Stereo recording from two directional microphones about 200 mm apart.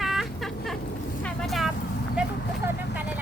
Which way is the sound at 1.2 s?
Centre (ahead or behind).